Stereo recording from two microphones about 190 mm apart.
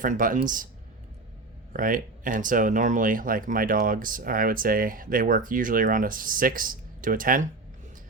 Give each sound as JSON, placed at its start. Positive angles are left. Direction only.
{"t": 0.0, "sound": "speech", "side_deg": -45}
{"t": 1.7, "sound": "speech", "side_deg": -45}